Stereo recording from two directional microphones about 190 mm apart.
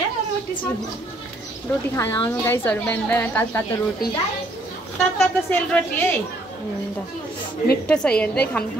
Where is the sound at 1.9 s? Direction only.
10° left (ahead or behind).